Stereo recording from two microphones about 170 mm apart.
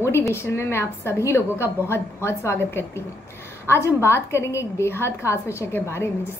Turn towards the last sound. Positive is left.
turn(degrees=15)  # may be behind; listen again after turning